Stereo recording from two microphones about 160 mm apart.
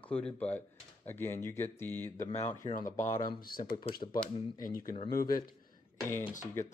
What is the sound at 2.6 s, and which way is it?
Speech, 55° left (ahead or behind).